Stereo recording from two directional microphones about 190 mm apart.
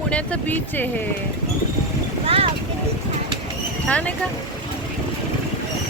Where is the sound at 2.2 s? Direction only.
30° right (ahead or behind).